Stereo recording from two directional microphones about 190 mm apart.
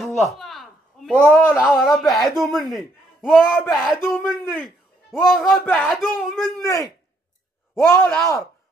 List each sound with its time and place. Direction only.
0.3 s a sound: centre (ahead or behind)
1.6 s a man's voice: centre (ahead or behind)
6.6 s speech: 15° left (ahead or behind)
7.9 s speech: 10° left (ahead or behind)